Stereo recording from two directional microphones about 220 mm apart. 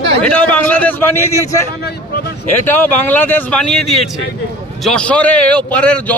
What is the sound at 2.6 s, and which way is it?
Speech, 10° left (ahead or behind).